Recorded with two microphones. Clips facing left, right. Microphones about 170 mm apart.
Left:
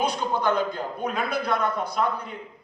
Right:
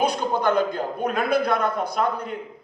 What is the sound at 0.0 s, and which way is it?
A man's voice, 55° right (ahead or behind).